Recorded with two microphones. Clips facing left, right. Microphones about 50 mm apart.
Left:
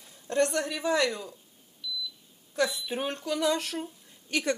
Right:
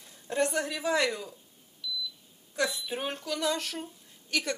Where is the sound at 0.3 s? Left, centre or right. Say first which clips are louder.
Left 2 dB; centre.